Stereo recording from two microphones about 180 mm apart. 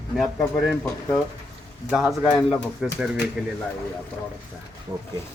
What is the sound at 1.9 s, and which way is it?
Speech, 5° right (ahead or behind).